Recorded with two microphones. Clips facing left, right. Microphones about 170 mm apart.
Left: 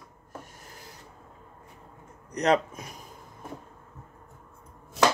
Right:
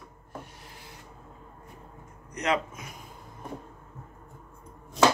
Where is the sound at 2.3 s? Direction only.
35° left (ahead or behind).